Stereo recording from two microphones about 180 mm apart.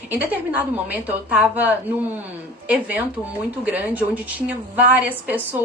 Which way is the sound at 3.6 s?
10° right (ahead or behind).